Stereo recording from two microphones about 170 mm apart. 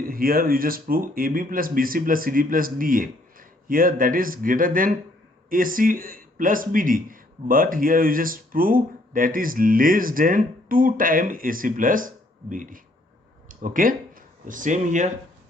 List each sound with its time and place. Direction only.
0.0 s speech: 60° right (ahead or behind)